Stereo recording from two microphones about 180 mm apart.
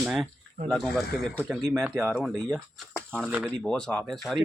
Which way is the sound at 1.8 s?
10° right (ahead or behind).